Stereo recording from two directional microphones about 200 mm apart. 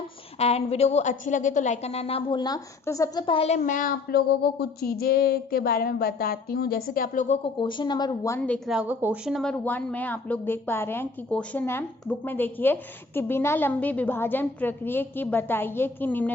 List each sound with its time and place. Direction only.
0.3 s a woman's voice: 30° left (ahead or behind)
7.4 s a woman's voice: 25° left (ahead or behind); by 16.3 s 10° left (ahead or behind)